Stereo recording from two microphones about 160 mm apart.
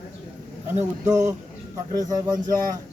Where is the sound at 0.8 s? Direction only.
20° right (ahead or behind).